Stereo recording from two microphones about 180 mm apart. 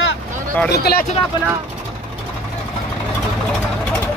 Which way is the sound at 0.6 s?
60° left (ahead or behind).